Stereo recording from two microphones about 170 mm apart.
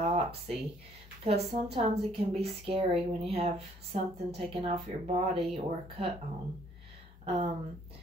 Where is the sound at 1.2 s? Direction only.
35° right (ahead or behind).